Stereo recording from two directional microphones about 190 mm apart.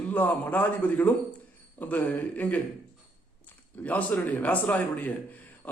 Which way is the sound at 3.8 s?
10° left (ahead or behind).